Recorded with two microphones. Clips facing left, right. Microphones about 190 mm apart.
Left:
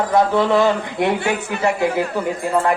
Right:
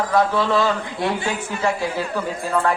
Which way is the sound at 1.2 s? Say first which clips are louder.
Left 4 dB; 65° left (ahead or behind).